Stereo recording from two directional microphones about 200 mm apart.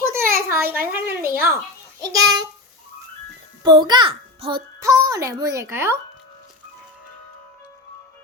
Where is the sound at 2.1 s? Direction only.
20° right (ahead or behind).